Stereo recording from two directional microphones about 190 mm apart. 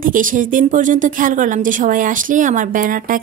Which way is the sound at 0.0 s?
45° right (ahead or behind).